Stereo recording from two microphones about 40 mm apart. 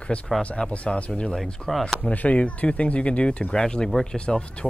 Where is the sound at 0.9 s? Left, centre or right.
Left.